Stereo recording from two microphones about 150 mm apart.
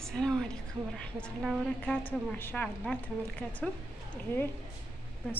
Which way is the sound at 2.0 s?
15° left (ahead or behind).